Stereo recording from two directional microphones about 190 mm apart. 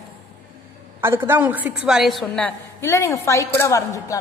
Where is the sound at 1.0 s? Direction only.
10° right (ahead or behind).